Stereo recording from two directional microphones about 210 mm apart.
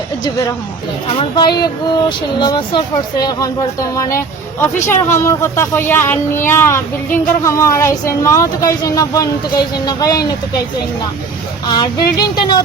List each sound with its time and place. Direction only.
1.2 s speech: 20° left (ahead or behind)
4.6 s speech: 15° left (ahead or behind)
11.7 s speech: 20° left (ahead or behind)